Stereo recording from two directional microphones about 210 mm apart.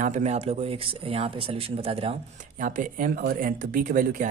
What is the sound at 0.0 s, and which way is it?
Speech, 35° right (ahead or behind).